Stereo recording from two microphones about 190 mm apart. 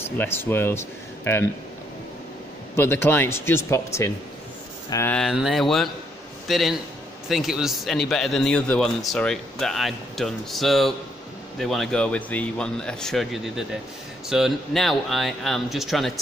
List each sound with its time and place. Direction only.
0.0 s speech: 10° left (ahead or behind)
2.7 s speech: 10° left (ahead or behind)
5.1 s a man's voice: centre (ahead or behind)